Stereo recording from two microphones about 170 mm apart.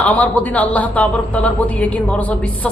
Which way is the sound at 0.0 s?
10° left (ahead or behind).